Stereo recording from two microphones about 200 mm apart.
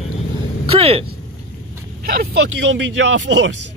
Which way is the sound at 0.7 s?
30° right (ahead or behind).